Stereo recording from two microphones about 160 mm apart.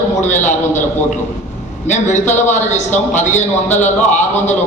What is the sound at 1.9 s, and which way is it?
A man's voice, 50° left (ahead or behind).